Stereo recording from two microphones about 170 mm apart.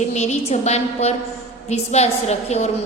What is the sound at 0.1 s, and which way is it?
A woman's voice, 40° left (ahead or behind).